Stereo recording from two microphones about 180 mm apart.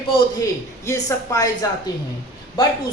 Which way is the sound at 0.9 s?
20° left (ahead or behind).